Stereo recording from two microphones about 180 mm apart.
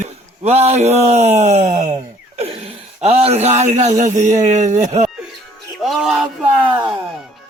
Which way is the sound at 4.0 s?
40° right (ahead or behind).